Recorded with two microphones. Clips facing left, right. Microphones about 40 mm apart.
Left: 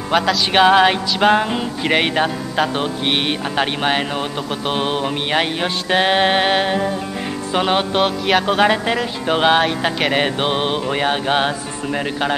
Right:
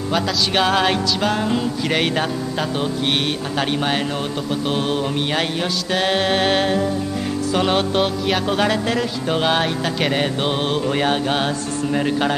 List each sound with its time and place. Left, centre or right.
0.5 s music: left
1.2 s music: left; by 12.4 s centre